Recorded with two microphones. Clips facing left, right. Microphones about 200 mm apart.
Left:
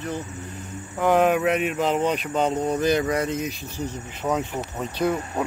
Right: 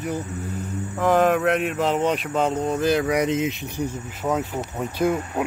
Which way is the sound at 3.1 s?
20° right (ahead or behind).